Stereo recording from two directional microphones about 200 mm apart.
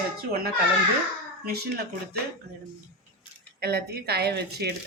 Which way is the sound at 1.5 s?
50° right (ahead or behind).